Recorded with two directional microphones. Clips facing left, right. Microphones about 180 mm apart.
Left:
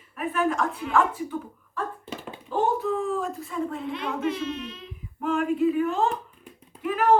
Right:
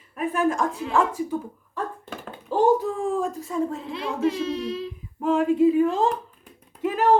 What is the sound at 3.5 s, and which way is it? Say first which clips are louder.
Speech: right 3 dB; 30° right (ahead or behind).